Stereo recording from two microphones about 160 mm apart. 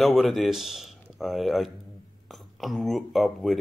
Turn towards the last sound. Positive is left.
turn(degrees=0)  # may be behind; listen again after turning